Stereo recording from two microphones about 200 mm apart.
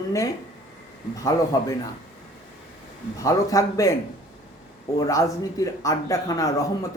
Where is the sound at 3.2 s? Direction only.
15° left (ahead or behind).